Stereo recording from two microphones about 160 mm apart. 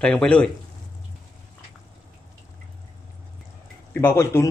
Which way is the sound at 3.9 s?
15° left (ahead or behind).